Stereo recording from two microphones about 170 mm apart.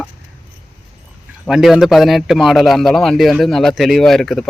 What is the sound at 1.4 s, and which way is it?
A man's voice, 5° right (ahead or behind).